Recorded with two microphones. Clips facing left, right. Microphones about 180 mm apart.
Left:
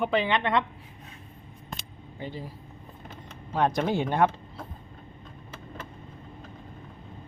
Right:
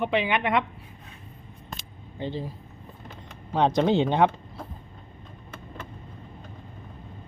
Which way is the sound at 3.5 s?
20° right (ahead or behind).